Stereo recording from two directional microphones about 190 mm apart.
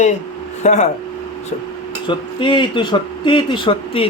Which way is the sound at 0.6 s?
35° left (ahead or behind).